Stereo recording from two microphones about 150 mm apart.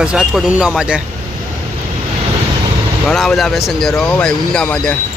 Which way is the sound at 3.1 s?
Centre (ahead or behind).